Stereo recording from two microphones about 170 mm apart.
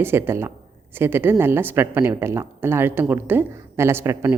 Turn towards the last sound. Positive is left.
turn(degrees=-15)  # may be behind; listen again after turning